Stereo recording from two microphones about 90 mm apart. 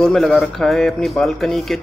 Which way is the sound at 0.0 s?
5° left (ahead or behind).